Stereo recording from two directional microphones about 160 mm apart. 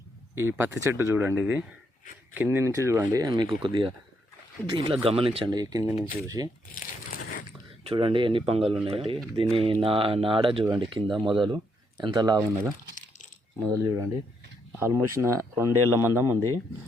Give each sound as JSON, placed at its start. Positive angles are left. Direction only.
{"t": 0.3, "sound": "speech", "side_deg": -15}
{"t": 5.5, "sound": "speech", "side_deg": -20}
{"t": 6.7, "sound": "crumpling", "side_deg": 60}
{"t": 7.9, "sound": "speech", "side_deg": -30}
{"t": 13.6, "sound": "speech", "side_deg": -20}